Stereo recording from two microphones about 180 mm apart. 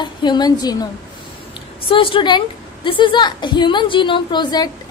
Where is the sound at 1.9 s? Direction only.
30° left (ahead or behind).